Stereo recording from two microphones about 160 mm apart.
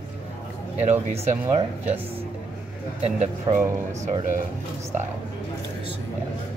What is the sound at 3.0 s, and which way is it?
Speech, 45° right (ahead or behind).